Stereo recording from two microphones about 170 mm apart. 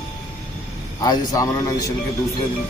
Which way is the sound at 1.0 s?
20° left (ahead or behind).